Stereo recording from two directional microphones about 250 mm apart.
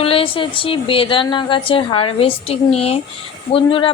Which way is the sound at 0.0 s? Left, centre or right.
Left.